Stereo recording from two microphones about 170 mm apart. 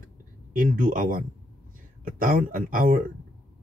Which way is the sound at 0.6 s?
55° right (ahead or behind).